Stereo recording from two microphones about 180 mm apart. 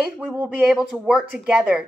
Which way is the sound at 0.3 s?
10° right (ahead or behind).